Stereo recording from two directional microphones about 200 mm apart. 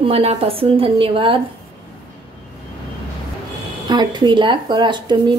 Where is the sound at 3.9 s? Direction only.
20° right (ahead or behind).